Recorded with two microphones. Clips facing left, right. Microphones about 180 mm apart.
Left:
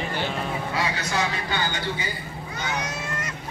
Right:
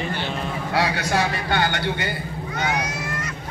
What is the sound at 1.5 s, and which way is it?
Speech, 70° right (ahead or behind).